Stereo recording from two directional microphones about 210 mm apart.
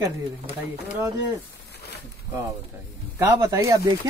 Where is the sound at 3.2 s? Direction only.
15° right (ahead or behind).